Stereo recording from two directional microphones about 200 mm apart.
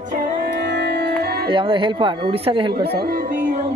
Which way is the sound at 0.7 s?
55° right (ahead or behind).